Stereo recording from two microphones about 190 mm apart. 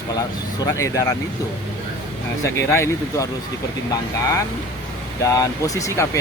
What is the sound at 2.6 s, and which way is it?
Speech, 15° left (ahead or behind).